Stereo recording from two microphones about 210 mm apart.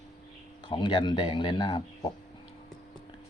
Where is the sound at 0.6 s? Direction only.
20° left (ahead or behind).